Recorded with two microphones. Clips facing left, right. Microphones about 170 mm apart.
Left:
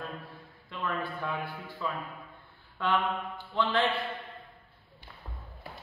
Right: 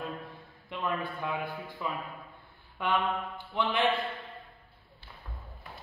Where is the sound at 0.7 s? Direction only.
15° right (ahead or behind).